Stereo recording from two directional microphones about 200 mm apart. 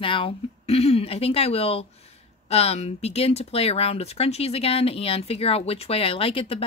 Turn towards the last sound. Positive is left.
turn(degrees=30)  # may be behind; listen again after turning